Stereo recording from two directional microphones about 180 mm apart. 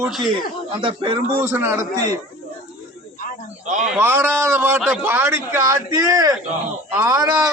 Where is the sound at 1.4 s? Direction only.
10° right (ahead or behind).